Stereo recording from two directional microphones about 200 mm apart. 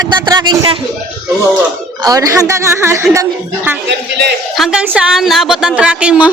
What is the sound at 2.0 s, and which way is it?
A woman's voice, 15° right (ahead or behind).